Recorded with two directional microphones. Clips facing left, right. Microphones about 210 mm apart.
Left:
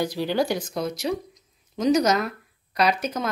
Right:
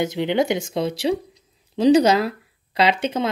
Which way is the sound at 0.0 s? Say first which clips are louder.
Right 3 dB; 20° right (ahead or behind).